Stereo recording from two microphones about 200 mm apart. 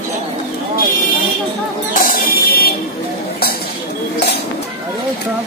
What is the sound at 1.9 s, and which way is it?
Music, 45° left (ahead or behind).